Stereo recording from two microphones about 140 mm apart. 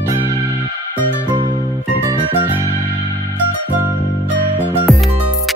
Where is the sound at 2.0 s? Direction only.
15° right (ahead or behind).